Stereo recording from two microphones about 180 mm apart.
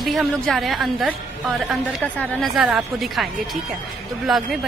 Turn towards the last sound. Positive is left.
turn(degrees=0)  # may be behind; listen again after turning